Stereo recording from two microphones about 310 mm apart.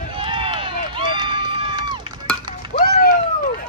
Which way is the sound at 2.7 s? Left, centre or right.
Left.